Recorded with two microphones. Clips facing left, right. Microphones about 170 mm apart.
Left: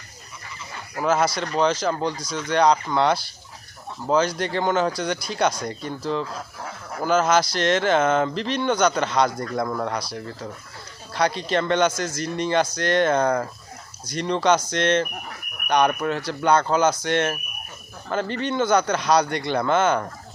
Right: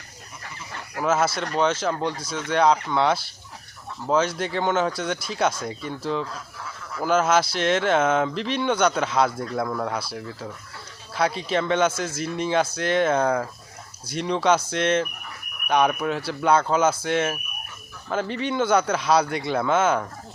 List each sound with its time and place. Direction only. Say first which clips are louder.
0.9 s speech: left 1 dB; 5° right (ahead or behind)